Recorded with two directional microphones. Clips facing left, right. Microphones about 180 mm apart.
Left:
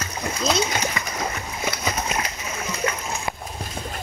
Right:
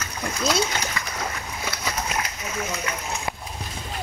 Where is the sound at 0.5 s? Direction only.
20° left (ahead or behind).